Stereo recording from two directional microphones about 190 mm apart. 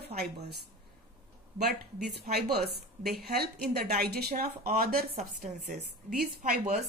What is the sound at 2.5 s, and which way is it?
A woman's voice, 55° right (ahead or behind).